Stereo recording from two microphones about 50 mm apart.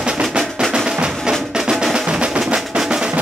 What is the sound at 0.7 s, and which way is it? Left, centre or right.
Music, centre.